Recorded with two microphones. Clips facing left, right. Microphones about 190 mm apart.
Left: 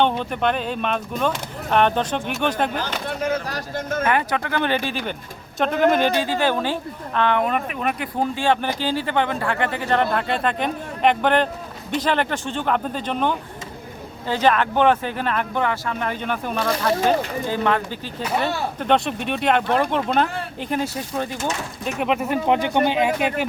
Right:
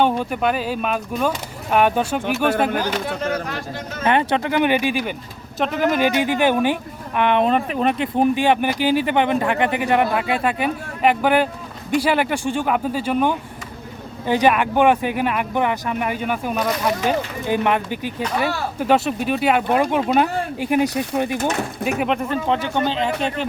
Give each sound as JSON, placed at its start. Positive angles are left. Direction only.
{"t": 0.0, "sound": "speech", "side_deg": -5}
{"t": 3.5, "sound": "speech", "side_deg": 50}
{"t": 4.0, "sound": "speech", "side_deg": -25}
{"t": 5.5, "sound": "speech", "side_deg": 0}
{"t": 6.1, "sound": "speech", "side_deg": -15}
{"t": 21.9, "sound": "speech", "side_deg": 0}